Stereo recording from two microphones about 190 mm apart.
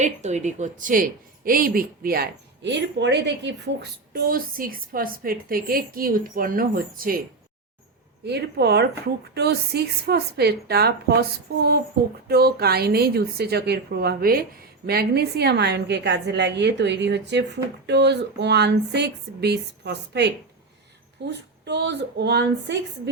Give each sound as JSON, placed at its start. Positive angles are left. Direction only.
{"t": 0.0, "sound": "a woman's voice", "side_deg": -35}
{"t": 4.1, "sound": "a woman's voice", "side_deg": -50}
{"t": 8.2, "sound": "a woman's voice", "side_deg": -60}